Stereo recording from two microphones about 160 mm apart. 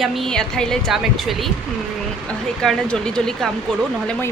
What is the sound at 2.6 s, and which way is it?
Speech, 5° left (ahead or behind).